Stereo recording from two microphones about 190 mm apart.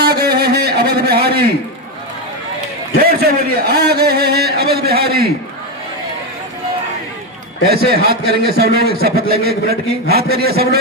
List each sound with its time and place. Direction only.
0.0 s a sound: 55° right (ahead or behind)
3.0 s a man's voice: 55° right (ahead or behind)
7.9 s a man's voice: 55° right (ahead or behind)